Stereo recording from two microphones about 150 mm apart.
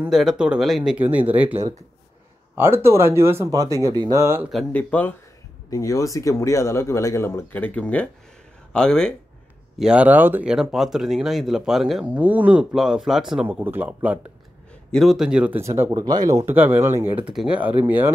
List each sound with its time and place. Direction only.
0.1 s speech: centre (ahead or behind); by 4.5 s 20° right (ahead or behind)
4.7 s speech: 10° left (ahead or behind)
5.7 s speech: 20° left (ahead or behind); by 9.1 s 5° left (ahead or behind)
9.8 s speech: 5° right (ahead or behind)
14.9 s speech: centre (ahead or behind)
15.6 s speech: 20° right (ahead or behind)